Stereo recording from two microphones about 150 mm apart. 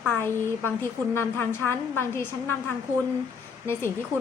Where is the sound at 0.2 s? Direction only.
15° left (ahead or behind).